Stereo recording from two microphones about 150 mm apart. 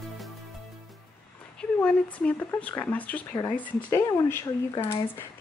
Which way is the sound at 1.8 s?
10° left (ahead or behind).